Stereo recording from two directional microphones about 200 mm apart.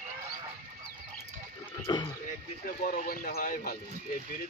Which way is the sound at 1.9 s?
20° left (ahead or behind).